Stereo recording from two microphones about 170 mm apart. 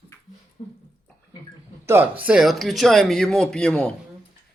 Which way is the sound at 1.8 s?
15° right (ahead or behind).